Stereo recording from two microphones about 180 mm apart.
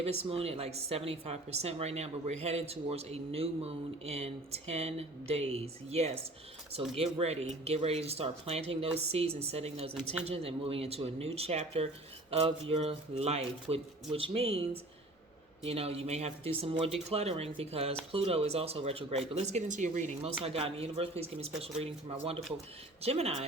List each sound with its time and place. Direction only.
0.0 s a woman's voice: 35° right (ahead or behind)
20.4 s a woman's voice: 30° right (ahead or behind)